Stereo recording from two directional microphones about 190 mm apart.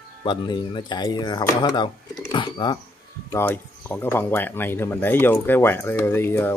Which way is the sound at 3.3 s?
10° left (ahead or behind).